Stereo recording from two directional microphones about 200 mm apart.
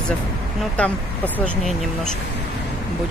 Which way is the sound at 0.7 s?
5° left (ahead or behind).